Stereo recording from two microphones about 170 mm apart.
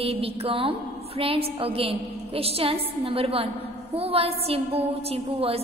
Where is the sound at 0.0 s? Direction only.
35° right (ahead or behind).